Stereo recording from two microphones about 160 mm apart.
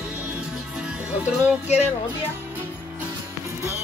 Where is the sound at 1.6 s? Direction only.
45° left (ahead or behind).